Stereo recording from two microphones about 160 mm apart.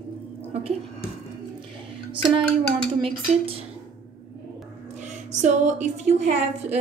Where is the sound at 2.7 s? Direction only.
35° right (ahead or behind).